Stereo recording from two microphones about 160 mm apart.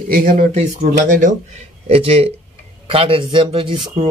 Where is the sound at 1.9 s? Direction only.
40° right (ahead or behind).